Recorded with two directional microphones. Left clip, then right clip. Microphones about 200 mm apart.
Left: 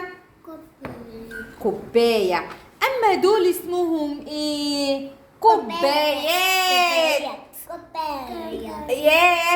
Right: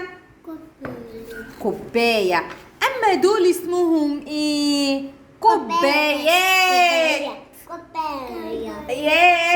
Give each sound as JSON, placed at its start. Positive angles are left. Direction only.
{"t": 1.9, "sound": "a woman's voice", "side_deg": -10}
{"t": 8.9, "sound": "child singing", "side_deg": 10}